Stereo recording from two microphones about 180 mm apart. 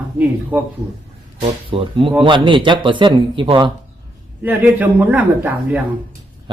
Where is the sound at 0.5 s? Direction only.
10° right (ahead or behind).